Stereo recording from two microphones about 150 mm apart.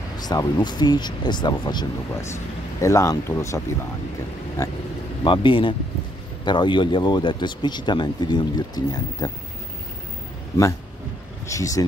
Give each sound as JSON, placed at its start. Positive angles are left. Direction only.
{"t": 0.2, "sound": "speech", "side_deg": 25}
{"t": 5.2, "sound": "speech", "side_deg": 35}
{"t": 11.4, "sound": "speech", "side_deg": 20}